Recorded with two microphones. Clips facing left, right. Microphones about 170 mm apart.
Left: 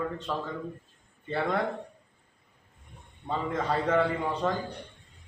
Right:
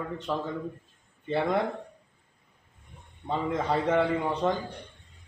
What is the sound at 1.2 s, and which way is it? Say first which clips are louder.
Speech: right 3 dB; 15° right (ahead or behind).